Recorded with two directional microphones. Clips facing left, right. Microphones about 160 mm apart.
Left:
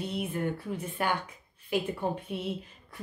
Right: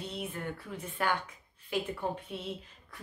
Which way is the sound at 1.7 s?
15° left (ahead or behind).